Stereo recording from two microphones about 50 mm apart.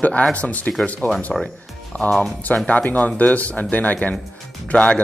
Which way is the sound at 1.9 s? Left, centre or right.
Left.